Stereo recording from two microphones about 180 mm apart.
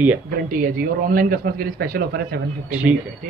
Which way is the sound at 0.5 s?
50° right (ahead or behind).